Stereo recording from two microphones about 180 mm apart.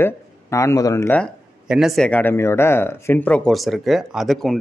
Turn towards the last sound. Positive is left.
turn(degrees=0)  # may be behind; listen again after turning